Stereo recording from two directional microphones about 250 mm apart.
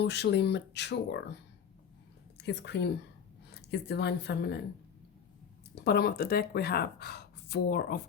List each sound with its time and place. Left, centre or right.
0.0 s speech: left
2.4 s speech: left
5.7 s speech: left